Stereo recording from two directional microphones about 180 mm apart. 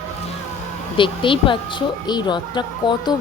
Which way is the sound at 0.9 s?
30° left (ahead or behind).